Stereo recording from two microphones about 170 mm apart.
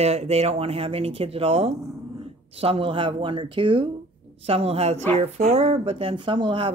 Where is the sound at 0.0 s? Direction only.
40° right (ahead or behind).